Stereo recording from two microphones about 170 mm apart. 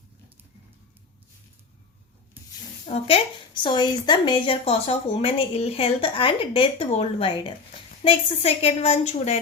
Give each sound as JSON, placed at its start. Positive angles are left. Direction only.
{"t": 2.8, "sound": "a woman's voice", "side_deg": 35}